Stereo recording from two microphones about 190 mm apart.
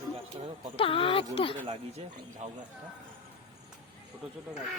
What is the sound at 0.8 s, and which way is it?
Speech, 30° left (ahead or behind).